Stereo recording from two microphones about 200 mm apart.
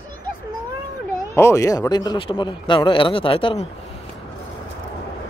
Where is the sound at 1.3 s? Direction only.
15° left (ahead or behind).